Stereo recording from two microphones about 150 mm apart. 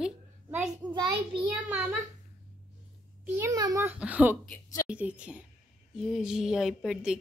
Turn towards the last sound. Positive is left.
turn(degrees=0)  # may be behind; listen again after turning